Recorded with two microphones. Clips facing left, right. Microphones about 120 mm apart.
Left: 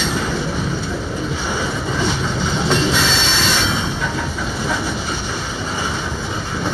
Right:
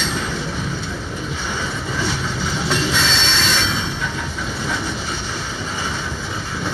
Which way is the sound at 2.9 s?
5° left (ahead or behind).